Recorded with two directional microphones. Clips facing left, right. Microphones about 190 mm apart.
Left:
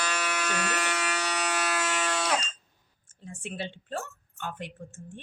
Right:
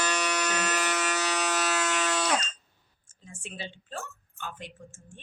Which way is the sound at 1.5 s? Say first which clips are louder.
Right 1 dB; 10° left (ahead or behind).